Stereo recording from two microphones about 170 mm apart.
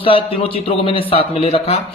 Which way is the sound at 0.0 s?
30° left (ahead or behind).